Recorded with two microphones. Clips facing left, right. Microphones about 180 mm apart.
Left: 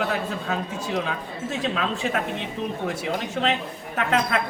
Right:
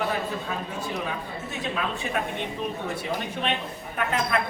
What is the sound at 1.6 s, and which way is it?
Speech, 90° left.